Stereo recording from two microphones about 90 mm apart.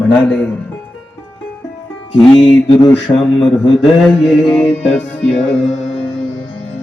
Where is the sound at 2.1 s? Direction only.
55° left (ahead or behind).